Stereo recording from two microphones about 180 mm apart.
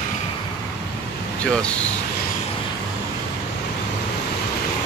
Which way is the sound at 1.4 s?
5° left (ahead or behind).